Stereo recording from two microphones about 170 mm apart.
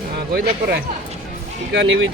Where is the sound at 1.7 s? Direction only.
90° right.